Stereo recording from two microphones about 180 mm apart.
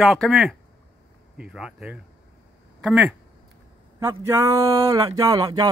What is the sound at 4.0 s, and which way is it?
Speech, 15° right (ahead or behind).